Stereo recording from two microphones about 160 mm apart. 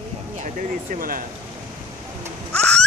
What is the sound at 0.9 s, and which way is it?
Speech, 60° right (ahead or behind).